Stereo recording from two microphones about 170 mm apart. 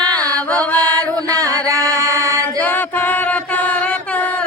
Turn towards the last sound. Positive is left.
turn(degrees=10)  # may be behind; listen again after turning